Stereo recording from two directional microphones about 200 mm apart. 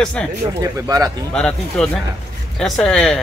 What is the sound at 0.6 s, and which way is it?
Speech, 20° right (ahead or behind).